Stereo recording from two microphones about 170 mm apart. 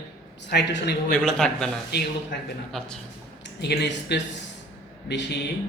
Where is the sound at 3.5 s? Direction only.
80° left.